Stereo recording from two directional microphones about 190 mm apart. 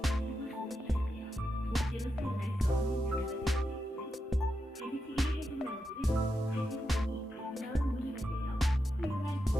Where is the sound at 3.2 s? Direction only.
Centre (ahead or behind).